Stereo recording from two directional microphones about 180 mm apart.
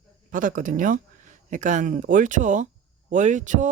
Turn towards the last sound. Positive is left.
turn(degrees=-45)  # may be behind; listen again after turning